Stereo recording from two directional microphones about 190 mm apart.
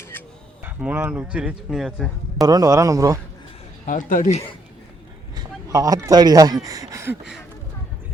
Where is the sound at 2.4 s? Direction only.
20° right (ahead or behind).